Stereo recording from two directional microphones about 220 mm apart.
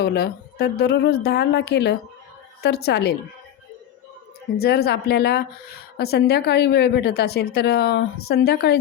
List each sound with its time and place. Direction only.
0.0 s a woman's voice: 45° left (ahead or behind)
4.5 s a woman's voice: 45° left (ahead or behind)